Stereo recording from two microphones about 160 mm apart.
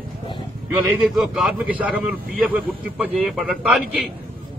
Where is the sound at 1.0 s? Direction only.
5° right (ahead or behind).